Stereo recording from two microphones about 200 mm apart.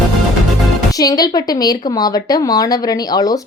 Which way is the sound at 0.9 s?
20° left (ahead or behind).